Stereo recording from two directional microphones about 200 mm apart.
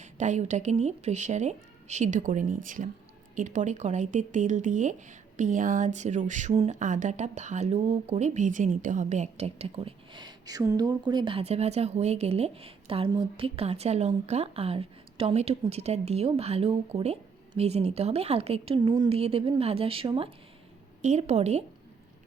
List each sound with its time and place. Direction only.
0.0 s speech: 35° right (ahead or behind)